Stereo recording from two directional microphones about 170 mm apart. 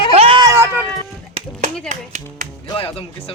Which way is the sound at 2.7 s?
35° left (ahead or behind).